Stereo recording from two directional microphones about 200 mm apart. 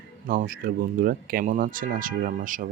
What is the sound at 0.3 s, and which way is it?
Speech, 45° right (ahead or behind).